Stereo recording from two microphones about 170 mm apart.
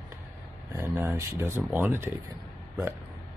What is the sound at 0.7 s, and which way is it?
Speech, 15° right (ahead or behind).